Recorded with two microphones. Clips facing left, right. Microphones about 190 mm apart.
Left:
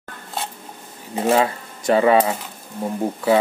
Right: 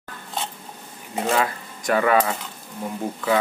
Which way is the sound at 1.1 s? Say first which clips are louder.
Left 4 dB; 30° left (ahead or behind).